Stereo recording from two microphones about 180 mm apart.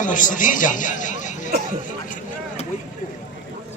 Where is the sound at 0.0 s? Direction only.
45° left (ahead or behind).